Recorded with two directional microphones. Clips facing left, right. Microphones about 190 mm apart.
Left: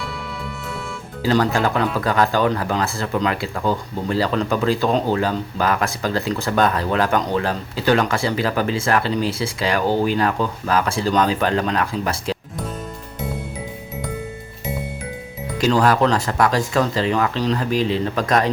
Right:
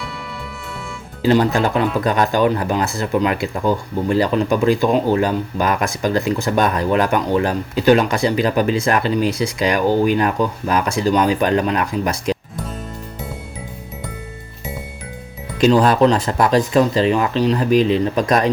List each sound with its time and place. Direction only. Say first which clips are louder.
1.2 s speech: right 3 dB; 20° right (ahead or behind)
15.5 s speech: right 4 dB; 20° right (ahead or behind)